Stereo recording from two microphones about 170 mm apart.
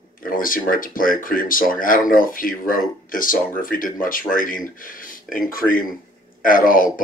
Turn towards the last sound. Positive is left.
turn(degrees=55)  # may be behind; listen again after turning